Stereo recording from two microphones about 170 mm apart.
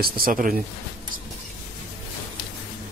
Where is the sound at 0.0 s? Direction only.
55° right (ahead or behind).